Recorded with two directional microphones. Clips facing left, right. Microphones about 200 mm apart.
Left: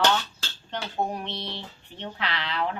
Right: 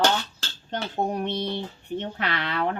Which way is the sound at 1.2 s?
50° right (ahead or behind).